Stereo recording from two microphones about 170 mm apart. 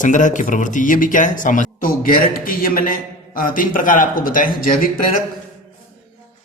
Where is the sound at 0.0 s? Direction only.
50° left (ahead or behind).